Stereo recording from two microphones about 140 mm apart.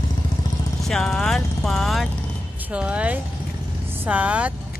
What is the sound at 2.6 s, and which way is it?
Speech, 10° right (ahead or behind).